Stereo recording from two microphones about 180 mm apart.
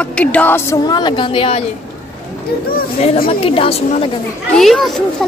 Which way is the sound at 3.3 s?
30° left (ahead or behind).